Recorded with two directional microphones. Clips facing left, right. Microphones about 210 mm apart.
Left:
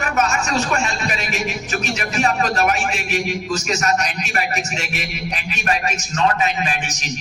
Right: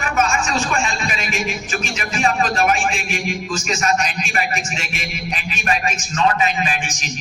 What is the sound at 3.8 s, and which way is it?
Speech, 45° left (ahead or behind).